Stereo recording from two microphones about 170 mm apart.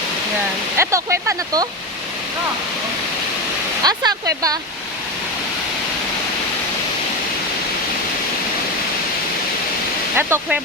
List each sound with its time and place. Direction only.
0.8 s speech: 15° right (ahead or behind)
3.8 s speech: 20° right (ahead or behind)
10.2 s speech: 15° right (ahead or behind)